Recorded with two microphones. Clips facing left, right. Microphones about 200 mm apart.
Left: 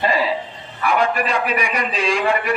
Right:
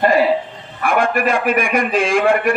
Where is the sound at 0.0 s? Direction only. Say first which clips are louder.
Right 6 dB; 55° right (ahead or behind).